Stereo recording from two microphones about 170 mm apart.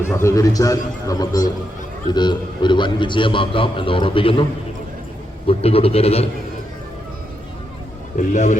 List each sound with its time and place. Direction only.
0.0 s a man's voice: 15° left (ahead or behind); by 4.4 s 30° left (ahead or behind)
5.5 s a man's voice: 35° left (ahead or behind)
8.1 s a man's voice: 45° left (ahead or behind)